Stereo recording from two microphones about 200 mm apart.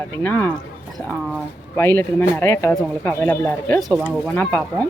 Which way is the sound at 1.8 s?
10° left (ahead or behind).